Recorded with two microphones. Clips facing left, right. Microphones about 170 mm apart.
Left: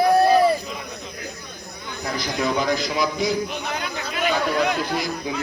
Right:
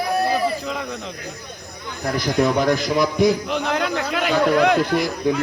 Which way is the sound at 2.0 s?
55° right (ahead or behind).